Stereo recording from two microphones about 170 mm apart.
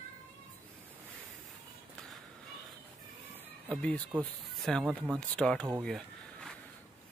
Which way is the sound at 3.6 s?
5° left (ahead or behind).